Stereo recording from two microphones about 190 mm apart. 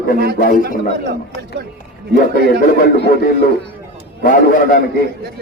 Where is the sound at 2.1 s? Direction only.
45° left (ahead or behind).